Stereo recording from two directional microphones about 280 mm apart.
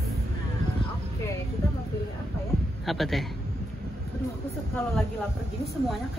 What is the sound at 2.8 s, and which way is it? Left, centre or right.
Speech, centre.